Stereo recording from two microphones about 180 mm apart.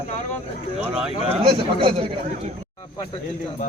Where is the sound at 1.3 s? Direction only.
30° right (ahead or behind).